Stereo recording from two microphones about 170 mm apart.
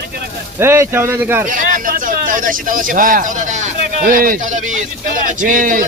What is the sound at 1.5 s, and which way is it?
Speech, 50° right (ahead or behind).